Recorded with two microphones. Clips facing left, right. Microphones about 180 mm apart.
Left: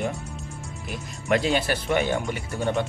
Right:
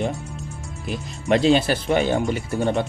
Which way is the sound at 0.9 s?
25° right (ahead or behind).